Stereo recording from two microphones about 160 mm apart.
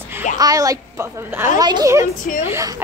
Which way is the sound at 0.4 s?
20° right (ahead or behind).